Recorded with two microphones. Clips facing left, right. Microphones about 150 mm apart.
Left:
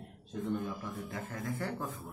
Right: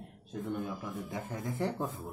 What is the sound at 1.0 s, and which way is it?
Speech, 15° right (ahead or behind).